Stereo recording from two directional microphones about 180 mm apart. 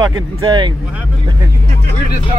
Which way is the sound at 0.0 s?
25° right (ahead or behind).